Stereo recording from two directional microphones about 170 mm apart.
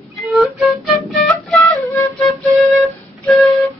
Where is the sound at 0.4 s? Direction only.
Centre (ahead or behind).